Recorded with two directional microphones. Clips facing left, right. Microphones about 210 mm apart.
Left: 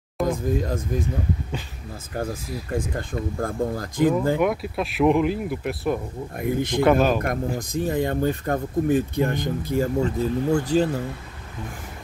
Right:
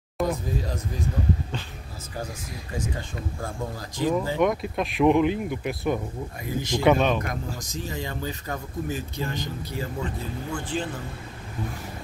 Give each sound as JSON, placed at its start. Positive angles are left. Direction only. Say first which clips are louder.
{"t": 0.2, "sound": "a sound", "louder": "left 2 dB", "side_deg": 0}
{"t": 2.7, "sound": "speech", "louder": "left 5 dB", "side_deg": 55}
{"t": 4.4, "sound": "speech", "louder": "left 1 dB", "side_deg": 5}
{"t": 6.4, "sound": "speech", "louder": "left 5 dB", "side_deg": 60}
{"t": 6.8, "sound": "speech", "louder": "left 2 dB", "side_deg": 0}
{"t": 7.2, "sound": "speech", "louder": "left 6 dB", "side_deg": 55}